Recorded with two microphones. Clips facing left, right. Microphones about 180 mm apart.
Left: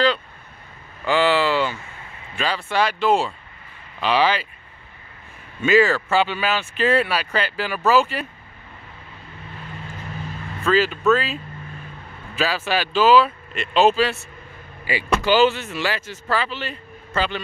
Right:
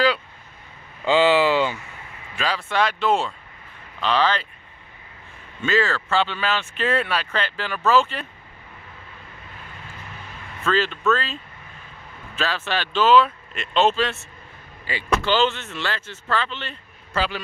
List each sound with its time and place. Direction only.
1.0 s vehicle: 20° right (ahead or behind)
2.3 s speech: centre (ahead or behind)
5.6 s speech: 10° left (ahead or behind)
10.6 s speech: 5° left (ahead or behind)
12.4 s speech: 10° left (ahead or behind)